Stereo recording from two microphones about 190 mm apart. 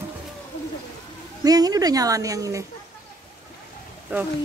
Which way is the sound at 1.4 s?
20° right (ahead or behind).